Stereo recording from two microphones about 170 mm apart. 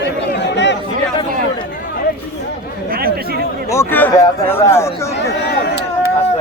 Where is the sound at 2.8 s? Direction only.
60° right (ahead or behind).